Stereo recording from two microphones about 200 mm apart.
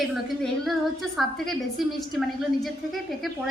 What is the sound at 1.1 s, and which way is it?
A woman's voice, centre (ahead or behind).